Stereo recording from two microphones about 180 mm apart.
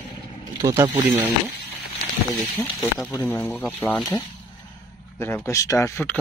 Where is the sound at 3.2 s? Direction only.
10° left (ahead or behind).